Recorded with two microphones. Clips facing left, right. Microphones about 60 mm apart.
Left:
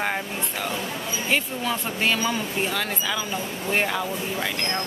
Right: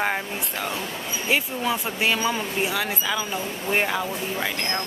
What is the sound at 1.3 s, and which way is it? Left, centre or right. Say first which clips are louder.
Speech: right 2 dB; centre.